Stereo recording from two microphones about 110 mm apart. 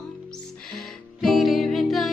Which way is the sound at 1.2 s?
Centre (ahead or behind).